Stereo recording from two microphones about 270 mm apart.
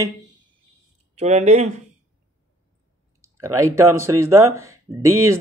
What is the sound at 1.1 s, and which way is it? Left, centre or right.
Speech, right.